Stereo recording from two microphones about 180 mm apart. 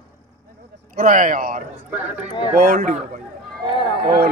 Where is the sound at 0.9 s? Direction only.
45° right (ahead or behind).